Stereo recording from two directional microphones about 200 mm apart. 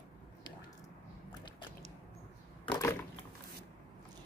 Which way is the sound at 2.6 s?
20° left (ahead or behind).